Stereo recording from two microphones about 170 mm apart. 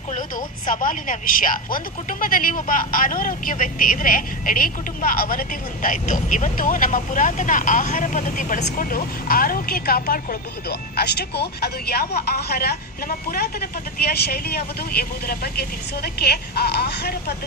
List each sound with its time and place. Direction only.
0.1 s a woman's voice: 50° left (ahead or behind); by 17.3 s 75° left (ahead or behind)